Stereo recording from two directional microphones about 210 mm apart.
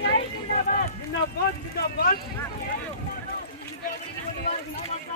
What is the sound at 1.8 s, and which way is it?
Speech, 45° left (ahead or behind).